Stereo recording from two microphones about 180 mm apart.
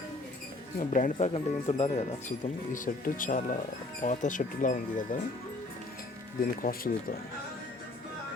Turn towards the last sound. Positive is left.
turn(degrees=55)  # may be behind; listen again after turning